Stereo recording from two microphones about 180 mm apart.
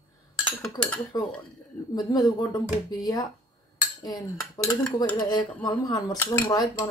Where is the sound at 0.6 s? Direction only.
5° left (ahead or behind).